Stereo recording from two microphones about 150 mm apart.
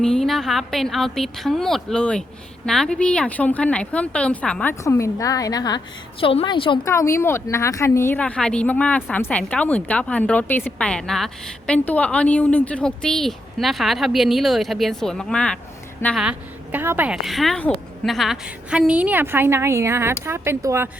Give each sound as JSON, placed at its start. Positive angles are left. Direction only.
{"t": 0.0, "sound": "a woman's voice", "side_deg": 5}
{"t": 4.7, "sound": "a woman's voice", "side_deg": 20}
{"t": 6.8, "sound": "speech", "side_deg": 20}
{"t": 16.7, "sound": "a woman's voice", "side_deg": -15}
{"t": 17.2, "sound": "a woman's voice", "side_deg": 0}